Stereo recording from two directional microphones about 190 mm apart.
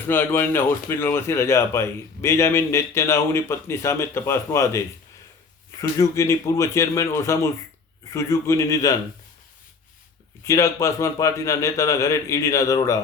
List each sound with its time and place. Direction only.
0.1 s speech: 10° left (ahead or behind)
5.8 s speech: 15° left (ahead or behind)
10.4 s speech: 15° left (ahead or behind)